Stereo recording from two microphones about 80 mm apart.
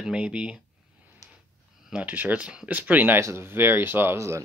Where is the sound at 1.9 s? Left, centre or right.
Centre.